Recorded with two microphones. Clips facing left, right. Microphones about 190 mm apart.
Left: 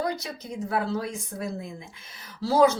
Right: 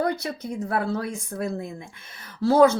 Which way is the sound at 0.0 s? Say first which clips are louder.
Right 4 dB; 55° right (ahead or behind).